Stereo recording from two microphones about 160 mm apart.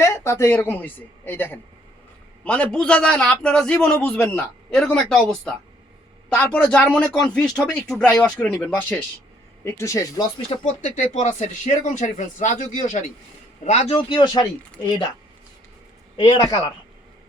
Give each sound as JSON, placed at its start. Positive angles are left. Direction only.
{"t": 0.0, "sound": "a man's voice", "side_deg": 15}
{"t": 10.5, "sound": "speech", "side_deg": 30}
{"t": 10.8, "sound": "speech", "side_deg": 50}
{"t": 13.9, "sound": "speech", "side_deg": 25}
{"t": 16.1, "sound": "speech", "side_deg": 25}